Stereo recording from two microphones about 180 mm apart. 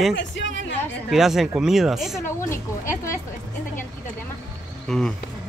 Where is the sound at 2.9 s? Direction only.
15° left (ahead or behind).